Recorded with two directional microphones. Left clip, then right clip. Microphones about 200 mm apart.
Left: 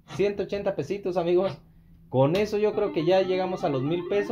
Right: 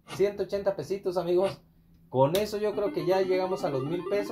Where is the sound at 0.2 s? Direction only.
45° left (ahead or behind).